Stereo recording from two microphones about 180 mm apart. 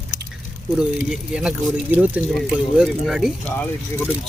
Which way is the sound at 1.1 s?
5° right (ahead or behind).